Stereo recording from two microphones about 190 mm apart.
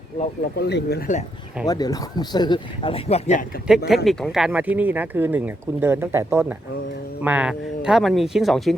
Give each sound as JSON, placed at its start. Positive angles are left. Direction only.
{"t": 0.5, "sound": "speech", "side_deg": 60}
{"t": 1.6, "sound": "speech", "side_deg": 20}
{"t": 3.8, "sound": "speech", "side_deg": 0}